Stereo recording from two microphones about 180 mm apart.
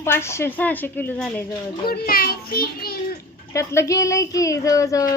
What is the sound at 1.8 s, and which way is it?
A child's voice, 55° left (ahead or behind).